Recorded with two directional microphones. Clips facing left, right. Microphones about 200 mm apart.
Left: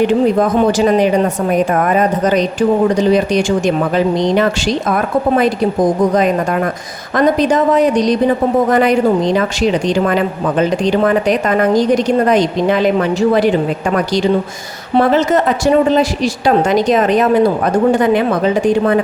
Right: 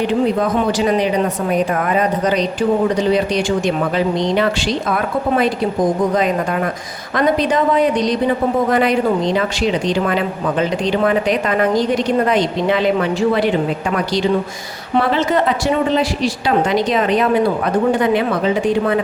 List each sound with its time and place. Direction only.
1.7 s speech: 45° left (ahead or behind)
7.2 s speech: 45° left (ahead or behind)